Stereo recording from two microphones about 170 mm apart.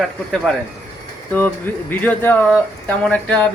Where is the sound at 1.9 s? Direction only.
10° left (ahead or behind).